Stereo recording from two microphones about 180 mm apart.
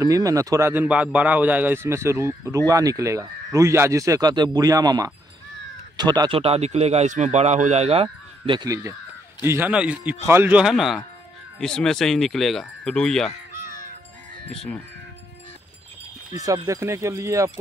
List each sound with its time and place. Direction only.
0.0 s a man's voice: 20° right (ahead or behind); by 13.3 s 5° left (ahead or behind)
13.7 s crow: 50° left (ahead or behind)
14.5 s speech: centre (ahead or behind)
16.3 s a man's voice: 20° right (ahead or behind)